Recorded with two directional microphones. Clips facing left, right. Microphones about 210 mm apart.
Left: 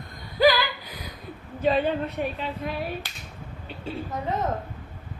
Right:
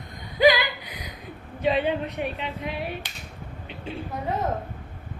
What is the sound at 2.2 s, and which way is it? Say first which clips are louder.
Speech: left 1 dB; 40° left (ahead or behind).